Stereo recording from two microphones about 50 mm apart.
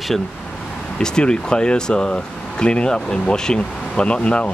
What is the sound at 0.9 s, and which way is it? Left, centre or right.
Speech, centre.